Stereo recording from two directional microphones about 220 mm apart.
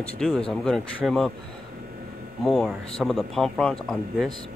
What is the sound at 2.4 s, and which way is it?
Speech, centre (ahead or behind).